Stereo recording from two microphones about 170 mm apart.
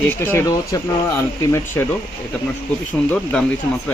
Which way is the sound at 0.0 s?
10° left (ahead or behind).